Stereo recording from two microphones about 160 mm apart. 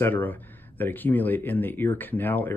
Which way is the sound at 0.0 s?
10° left (ahead or behind).